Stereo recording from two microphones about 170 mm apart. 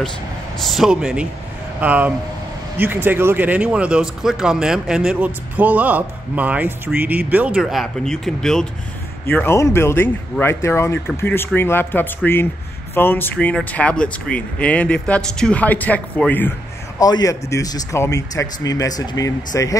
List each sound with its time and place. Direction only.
0.6 s a man's voice: centre (ahead or behind)
17.0 s speech: 20° left (ahead or behind)